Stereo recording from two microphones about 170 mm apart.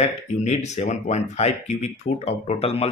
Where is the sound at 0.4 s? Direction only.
40° left (ahead or behind).